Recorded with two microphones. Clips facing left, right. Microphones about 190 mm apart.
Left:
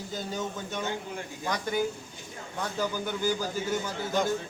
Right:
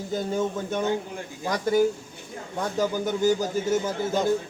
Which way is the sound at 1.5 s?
40° right (ahead or behind).